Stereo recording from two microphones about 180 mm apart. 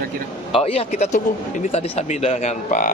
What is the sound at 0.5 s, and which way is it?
Speech, 30° left (ahead or behind).